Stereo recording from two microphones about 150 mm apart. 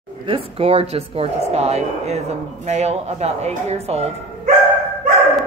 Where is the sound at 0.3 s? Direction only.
45° right (ahead or behind).